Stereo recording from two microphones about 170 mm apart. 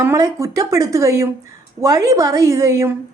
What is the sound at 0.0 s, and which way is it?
A woman's voice, 15° right (ahead or behind).